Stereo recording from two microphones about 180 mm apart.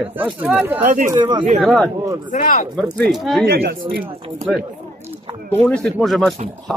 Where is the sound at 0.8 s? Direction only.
50° right (ahead or behind).